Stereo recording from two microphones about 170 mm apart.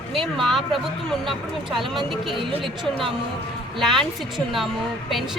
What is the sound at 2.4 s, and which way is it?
Speech, 30° right (ahead or behind).